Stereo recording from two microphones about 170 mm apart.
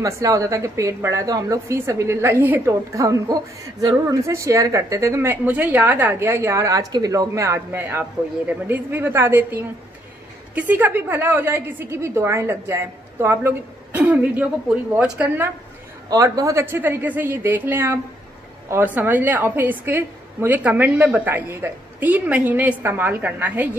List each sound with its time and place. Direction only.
0.0 s a woman's voice: 20° right (ahead or behind)
16.1 s a woman's voice: 20° right (ahead or behind)